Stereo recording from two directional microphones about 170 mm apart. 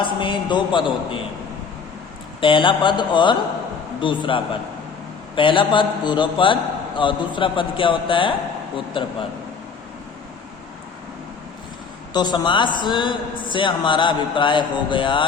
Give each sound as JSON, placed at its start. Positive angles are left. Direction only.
{"t": 0.0, "sound": "a man's voice", "side_deg": 30}
{"t": 2.4, "sound": "a man's voice", "side_deg": 30}
{"t": 12.1, "sound": "a man's voice", "side_deg": 25}